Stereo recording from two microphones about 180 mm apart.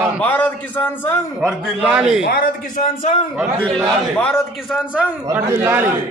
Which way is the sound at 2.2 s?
55° left (ahead or behind).